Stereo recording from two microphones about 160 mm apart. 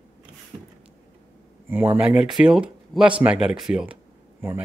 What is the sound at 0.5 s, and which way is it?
Vehicle, 30° right (ahead or behind).